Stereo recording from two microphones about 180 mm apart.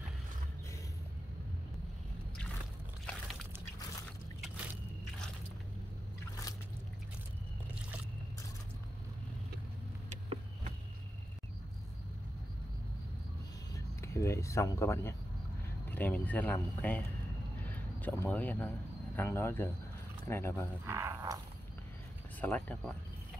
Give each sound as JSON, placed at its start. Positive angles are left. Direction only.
{"t": 10.0, "sound": "vehicle", "side_deg": -40}
{"t": 13.7, "sound": "speech", "side_deg": 15}
{"t": 20.8, "sound": "speech", "side_deg": -15}
{"t": 22.4, "sound": "speech", "side_deg": 10}